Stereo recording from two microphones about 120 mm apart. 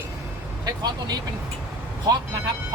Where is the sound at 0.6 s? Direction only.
35° right (ahead or behind).